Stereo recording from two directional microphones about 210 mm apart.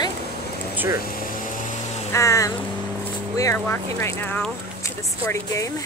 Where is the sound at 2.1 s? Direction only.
15° left (ahead or behind).